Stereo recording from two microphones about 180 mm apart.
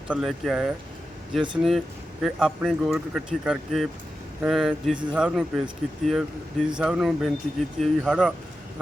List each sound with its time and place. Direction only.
0.1 s speech: centre (ahead or behind)